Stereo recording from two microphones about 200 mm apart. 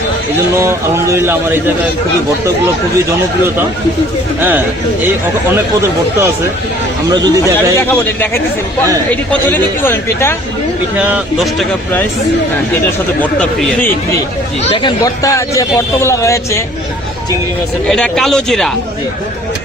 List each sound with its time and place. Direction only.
0.5 s a man's voice: 15° right (ahead or behind)
7.1 s a man's voice: 15° right (ahead or behind)
7.8 s a man's voice: 10° left (ahead or behind)
11.0 s speech: 5° right (ahead or behind)
13.4 s speech: 5° left (ahead or behind)
14.6 s a man's voice: 25° left (ahead or behind)
17.8 s speech: 5° left (ahead or behind)